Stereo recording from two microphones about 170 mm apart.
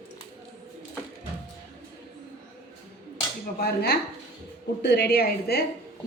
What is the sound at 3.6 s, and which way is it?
A woman's voice, 65° left (ahead or behind).